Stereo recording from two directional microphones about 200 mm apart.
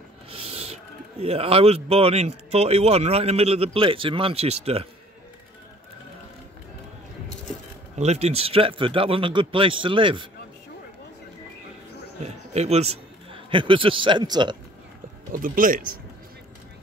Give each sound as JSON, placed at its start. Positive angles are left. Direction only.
{"t": 0.3, "sound": "owl", "side_deg": -30}
{"t": 1.2, "sound": "speech", "side_deg": -30}
{"t": 8.0, "sound": "speech", "side_deg": -30}
{"t": 12.5, "sound": "a man's voice", "side_deg": -30}
{"t": 15.3, "sound": "speech", "side_deg": -45}